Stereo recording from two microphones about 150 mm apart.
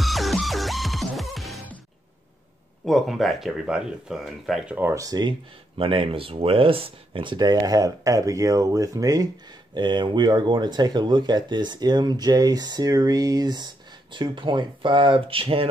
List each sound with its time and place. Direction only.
0.0 s music: centre (ahead or behind)
2.8 s speech: centre (ahead or behind)
4.7 s speech: 20° right (ahead or behind)
5.8 s speech: 35° right (ahead or behind)